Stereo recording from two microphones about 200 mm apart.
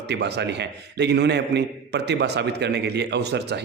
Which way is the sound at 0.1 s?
55° right (ahead or behind).